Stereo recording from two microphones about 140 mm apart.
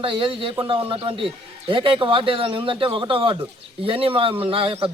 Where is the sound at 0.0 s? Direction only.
40° right (ahead or behind).